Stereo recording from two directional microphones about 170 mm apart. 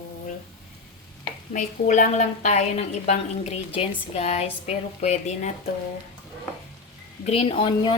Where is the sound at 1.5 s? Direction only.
45° left (ahead or behind).